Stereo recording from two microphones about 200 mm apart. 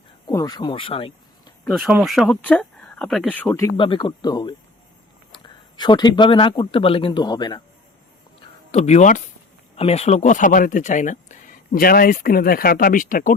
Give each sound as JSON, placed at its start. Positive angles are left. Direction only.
{"t": 0.3, "sound": "speech", "side_deg": 20}
{"t": 1.6, "sound": "speech", "side_deg": 0}
{"t": 3.8, "sound": "speech", "side_deg": 25}
{"t": 8.4, "sound": "a sound", "side_deg": 30}
{"t": 9.7, "sound": "speech", "side_deg": 30}